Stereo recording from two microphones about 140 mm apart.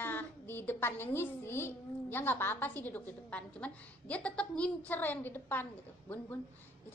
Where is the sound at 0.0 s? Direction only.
15° left (ahead or behind).